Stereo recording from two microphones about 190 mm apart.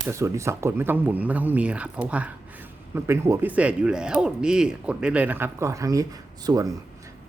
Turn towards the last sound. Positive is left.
turn(degrees=-20)  # may be behind; listen again after turning